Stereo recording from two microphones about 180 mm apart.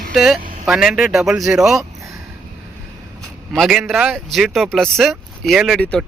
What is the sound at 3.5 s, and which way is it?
Speech, centre (ahead or behind).